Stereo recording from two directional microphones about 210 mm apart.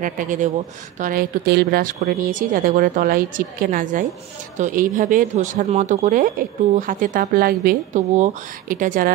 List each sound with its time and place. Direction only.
0.0 s speech: 40° right (ahead or behind)